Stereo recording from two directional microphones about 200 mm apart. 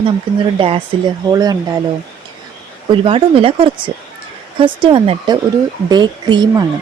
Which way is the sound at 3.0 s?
25° right (ahead or behind).